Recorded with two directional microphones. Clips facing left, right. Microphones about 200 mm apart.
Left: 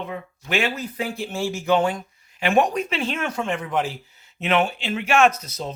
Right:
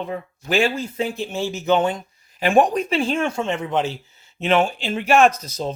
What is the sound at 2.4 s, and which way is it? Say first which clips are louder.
Speech: right 3 dB; 35° right (ahead or behind).